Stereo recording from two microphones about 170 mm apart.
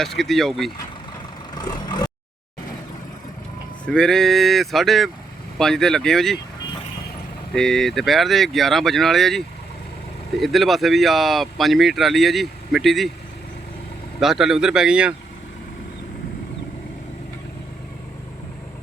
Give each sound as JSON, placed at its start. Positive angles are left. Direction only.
{"t": 0.0, "sound": "speech", "side_deg": 0}
{"t": 1.5, "sound": "vehicle", "side_deg": 25}
{"t": 3.8, "sound": "speech", "side_deg": 5}
{"t": 7.5, "sound": "speech", "side_deg": 5}
{"t": 14.2, "sound": "speech", "side_deg": 0}